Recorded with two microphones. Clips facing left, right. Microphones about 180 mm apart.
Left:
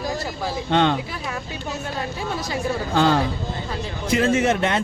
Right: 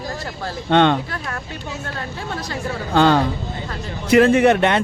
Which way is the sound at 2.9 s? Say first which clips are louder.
Right 4 dB; 65° right (ahead or behind).